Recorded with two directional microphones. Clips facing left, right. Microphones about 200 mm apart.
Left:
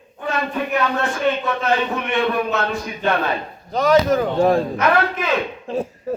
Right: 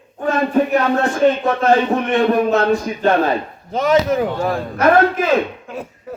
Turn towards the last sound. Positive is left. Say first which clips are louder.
# left 6 dB
turn(degrees=30)  # may be behind; listen again after turning